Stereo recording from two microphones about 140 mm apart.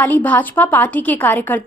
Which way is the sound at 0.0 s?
10° left (ahead or behind).